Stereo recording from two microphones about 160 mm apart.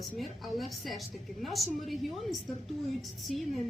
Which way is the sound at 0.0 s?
Centre (ahead or behind).